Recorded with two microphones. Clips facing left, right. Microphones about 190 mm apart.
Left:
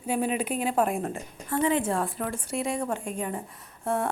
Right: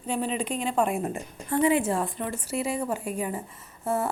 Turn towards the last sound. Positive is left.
turn(degrees=-5)  # may be behind; listen again after turning